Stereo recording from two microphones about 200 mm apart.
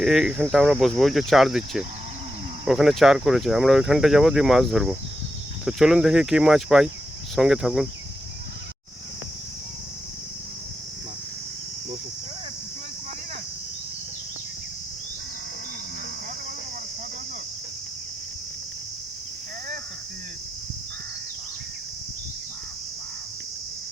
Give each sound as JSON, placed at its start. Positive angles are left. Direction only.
{"t": 0.0, "sound": "speech", "side_deg": 0}